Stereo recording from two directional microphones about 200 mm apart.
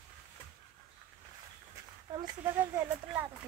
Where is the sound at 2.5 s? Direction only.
10° right (ahead or behind).